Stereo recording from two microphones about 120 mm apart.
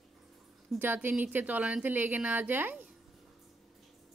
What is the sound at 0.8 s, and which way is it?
A woman's voice, 15° right (ahead or behind).